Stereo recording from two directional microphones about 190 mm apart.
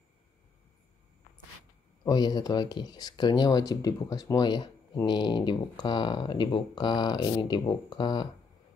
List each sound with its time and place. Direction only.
2.0 s speech: 20° left (ahead or behind)